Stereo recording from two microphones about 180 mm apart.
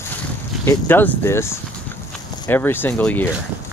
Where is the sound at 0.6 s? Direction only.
10° left (ahead or behind).